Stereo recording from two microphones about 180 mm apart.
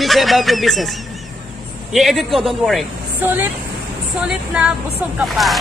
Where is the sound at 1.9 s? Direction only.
Centre (ahead or behind).